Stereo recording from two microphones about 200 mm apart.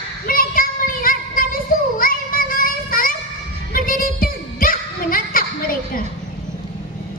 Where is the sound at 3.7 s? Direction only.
45° left (ahead or behind).